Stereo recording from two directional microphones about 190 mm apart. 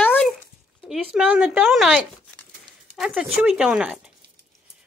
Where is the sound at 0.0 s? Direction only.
10° left (ahead or behind).